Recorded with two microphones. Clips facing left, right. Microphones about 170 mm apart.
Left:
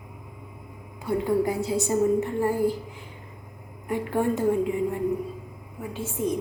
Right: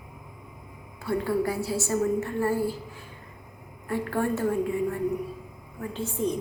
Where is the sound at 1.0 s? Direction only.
15° left (ahead or behind).